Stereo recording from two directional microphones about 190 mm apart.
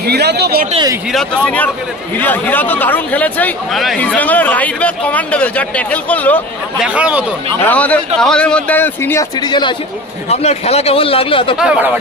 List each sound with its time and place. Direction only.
0.0 s speech: 60° right (ahead or behind)
1.1 s speech: 5° left (ahead or behind)
6.8 s speech: 5° right (ahead or behind)
7.6 s speech: 5° left (ahead or behind)
9.5 s speech: 25° left (ahead or behind)
10.3 s speech: 35° left (ahead or behind)
11.6 s speech: 5° right (ahead or behind)